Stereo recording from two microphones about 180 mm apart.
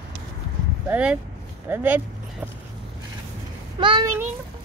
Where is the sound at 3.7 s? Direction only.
25° right (ahead or behind).